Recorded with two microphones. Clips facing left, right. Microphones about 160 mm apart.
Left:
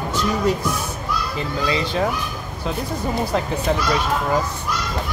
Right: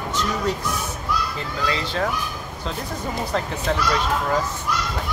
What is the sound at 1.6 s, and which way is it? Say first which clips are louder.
Speech: left 3 dB; 15° left (ahead or behind).